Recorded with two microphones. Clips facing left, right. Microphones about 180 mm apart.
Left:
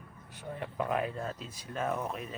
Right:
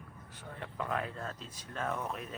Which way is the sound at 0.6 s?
15° left (ahead or behind).